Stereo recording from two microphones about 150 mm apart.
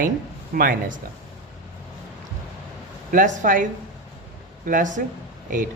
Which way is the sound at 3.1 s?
60° right (ahead or behind).